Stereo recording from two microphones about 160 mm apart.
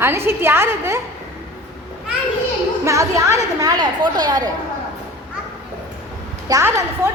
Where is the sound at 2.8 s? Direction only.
20° right (ahead or behind).